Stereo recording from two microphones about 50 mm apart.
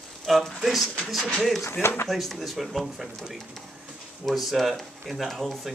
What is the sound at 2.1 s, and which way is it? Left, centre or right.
Speech, centre.